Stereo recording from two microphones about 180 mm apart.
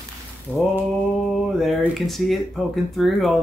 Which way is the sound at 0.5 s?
5° left (ahead or behind).